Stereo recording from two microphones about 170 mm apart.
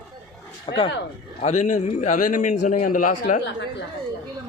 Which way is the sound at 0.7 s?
35° left (ahead or behind).